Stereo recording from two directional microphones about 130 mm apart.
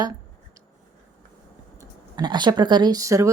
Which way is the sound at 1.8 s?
35° right (ahead or behind).